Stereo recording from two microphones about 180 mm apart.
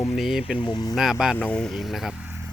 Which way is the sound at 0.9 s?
5° right (ahead or behind).